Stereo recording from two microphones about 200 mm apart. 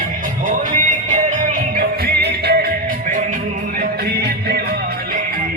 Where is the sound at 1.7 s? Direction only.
55° right (ahead or behind).